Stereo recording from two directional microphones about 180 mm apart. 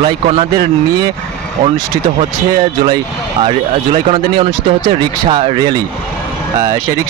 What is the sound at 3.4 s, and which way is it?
Speech, 30° right (ahead or behind).